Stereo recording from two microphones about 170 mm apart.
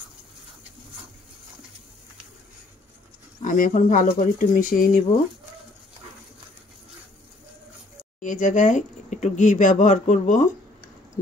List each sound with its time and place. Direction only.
3.4 s speech: 50° left (ahead or behind)
8.2 s speech: 50° left (ahead or behind)